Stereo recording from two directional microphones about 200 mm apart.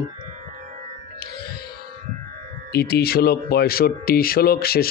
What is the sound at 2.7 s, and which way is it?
Speech, 55° left (ahead or behind).